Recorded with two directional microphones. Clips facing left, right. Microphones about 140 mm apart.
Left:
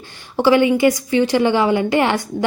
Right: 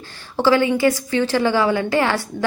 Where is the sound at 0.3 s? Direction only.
15° left (ahead or behind).